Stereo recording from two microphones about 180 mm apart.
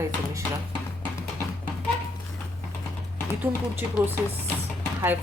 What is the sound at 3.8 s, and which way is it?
Speech, 10° right (ahead or behind).